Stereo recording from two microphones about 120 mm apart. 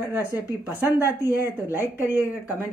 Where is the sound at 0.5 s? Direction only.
15° right (ahead or behind).